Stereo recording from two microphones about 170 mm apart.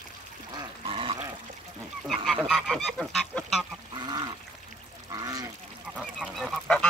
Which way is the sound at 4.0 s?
25° right (ahead or behind).